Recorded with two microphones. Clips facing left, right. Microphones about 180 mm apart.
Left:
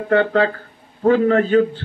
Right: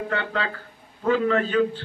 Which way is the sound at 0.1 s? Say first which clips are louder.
Left 17 dB; 50° left (ahead or behind).